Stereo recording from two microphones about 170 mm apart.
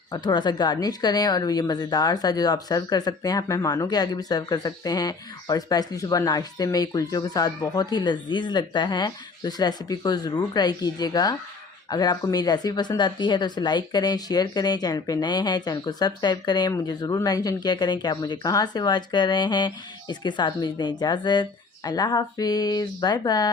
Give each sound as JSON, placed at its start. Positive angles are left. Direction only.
{"t": 0.1, "sound": "speech", "side_deg": 25}